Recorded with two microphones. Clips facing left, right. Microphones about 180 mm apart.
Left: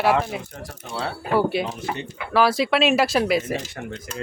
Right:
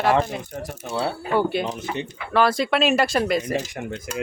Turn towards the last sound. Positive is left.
turn(degrees=-10)  # may be behind; listen again after turning